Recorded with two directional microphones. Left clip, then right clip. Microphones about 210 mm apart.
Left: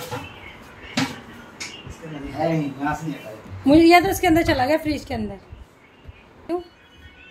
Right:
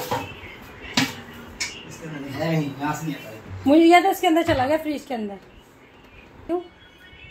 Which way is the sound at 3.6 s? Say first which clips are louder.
Left 1 dB; 15° left (ahead or behind).